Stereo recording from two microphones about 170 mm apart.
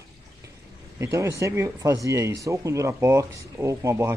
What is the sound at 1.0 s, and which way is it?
Speech, 15° right (ahead or behind).